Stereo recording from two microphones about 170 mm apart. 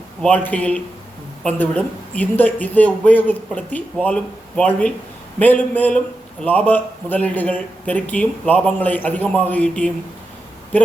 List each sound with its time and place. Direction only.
0.2 s speech: 10° left (ahead or behind)